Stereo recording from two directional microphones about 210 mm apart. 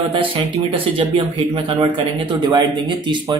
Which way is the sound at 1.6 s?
25° right (ahead or behind).